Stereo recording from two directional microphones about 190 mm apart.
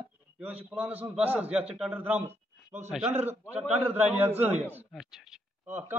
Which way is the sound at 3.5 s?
35° right (ahead or behind).